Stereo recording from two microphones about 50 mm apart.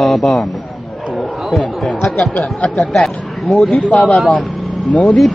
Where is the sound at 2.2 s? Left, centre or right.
Left.